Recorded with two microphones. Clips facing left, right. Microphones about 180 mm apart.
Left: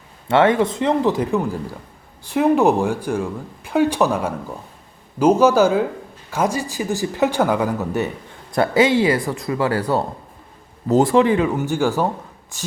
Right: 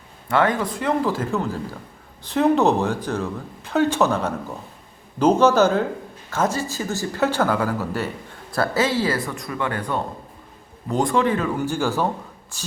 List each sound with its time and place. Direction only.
0.3 s speech: 25° left (ahead or behind)